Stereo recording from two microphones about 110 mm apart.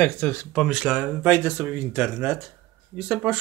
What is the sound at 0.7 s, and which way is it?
Speech, 10° right (ahead or behind).